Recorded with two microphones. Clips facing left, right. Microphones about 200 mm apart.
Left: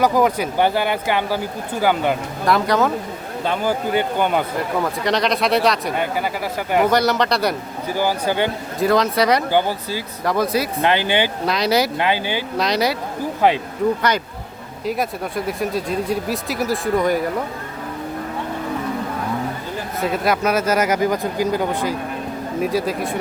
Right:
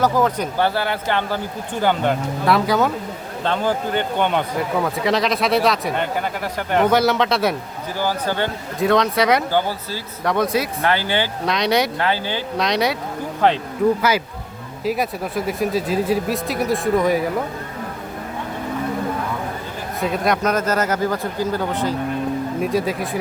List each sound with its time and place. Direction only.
0.0 s a man's voice: 10° left (ahead or behind)
3.4 s a man's voice: 10° left (ahead or behind)
7.9 s speech: 15° left (ahead or behind)
8.8 s a man's voice: centre (ahead or behind)
9.5 s speech: 15° left (ahead or behind)
10.2 s a man's voice: centre (ahead or behind)
10.8 s speech: 20° left (ahead or behind)
11.4 s a man's voice: centre (ahead or behind)
11.9 s speech: 15° left (ahead or behind)
12.5 s a man's voice: centre (ahead or behind)
14.8 s a man's voice: centre (ahead or behind)
20.0 s speech: centre (ahead or behind)
22.6 s a man's voice: centre (ahead or behind)